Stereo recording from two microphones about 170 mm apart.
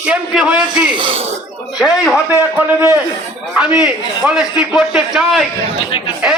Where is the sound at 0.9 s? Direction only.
30° right (ahead or behind).